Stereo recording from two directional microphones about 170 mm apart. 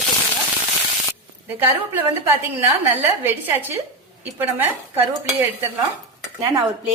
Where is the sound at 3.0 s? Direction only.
15° right (ahead or behind).